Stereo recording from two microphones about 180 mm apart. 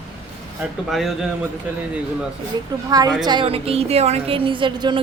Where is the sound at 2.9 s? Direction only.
20° right (ahead or behind).